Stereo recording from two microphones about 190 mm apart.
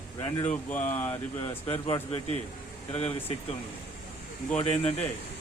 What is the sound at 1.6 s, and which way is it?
Speech, 30° left (ahead or behind).